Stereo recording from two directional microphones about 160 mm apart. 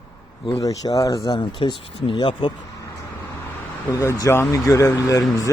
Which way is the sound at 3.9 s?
20° left (ahead or behind).